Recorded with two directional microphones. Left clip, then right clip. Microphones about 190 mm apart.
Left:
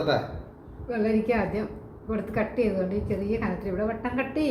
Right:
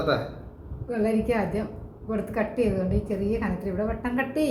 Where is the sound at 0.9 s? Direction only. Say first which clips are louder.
Even; 30° right (ahead or behind).